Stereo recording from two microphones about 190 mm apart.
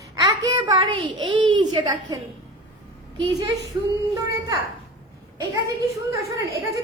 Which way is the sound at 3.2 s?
20° right (ahead or behind).